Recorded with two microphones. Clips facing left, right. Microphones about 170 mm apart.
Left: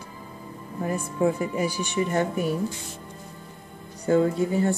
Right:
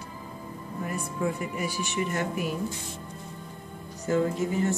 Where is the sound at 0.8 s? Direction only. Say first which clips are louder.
Left 6 dB; 30° left (ahead or behind).